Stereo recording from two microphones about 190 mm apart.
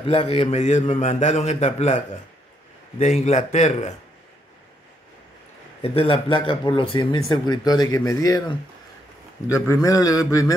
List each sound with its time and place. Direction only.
0.0 s a man's voice: 30° left (ahead or behind)
3.0 s a man's voice: 35° left (ahead or behind)
5.8 s speech: 30° left (ahead or behind)
9.8 s a sound: 15° left (ahead or behind)